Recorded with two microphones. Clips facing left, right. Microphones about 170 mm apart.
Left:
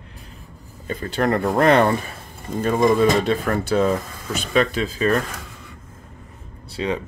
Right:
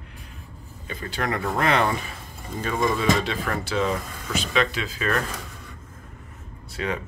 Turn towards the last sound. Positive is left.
turn(degrees=25)  # may be behind; listen again after turning